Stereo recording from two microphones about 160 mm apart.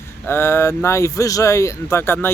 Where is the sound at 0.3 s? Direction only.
15° left (ahead or behind).